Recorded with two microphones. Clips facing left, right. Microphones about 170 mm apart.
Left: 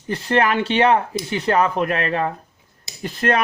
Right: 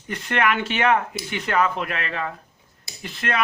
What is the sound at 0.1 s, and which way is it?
Speech, 35° left (ahead or behind).